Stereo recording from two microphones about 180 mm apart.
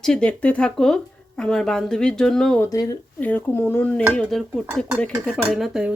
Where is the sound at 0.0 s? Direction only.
5° left (ahead or behind).